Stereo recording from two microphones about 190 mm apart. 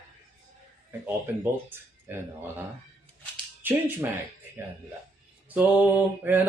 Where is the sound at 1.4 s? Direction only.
10° right (ahead or behind).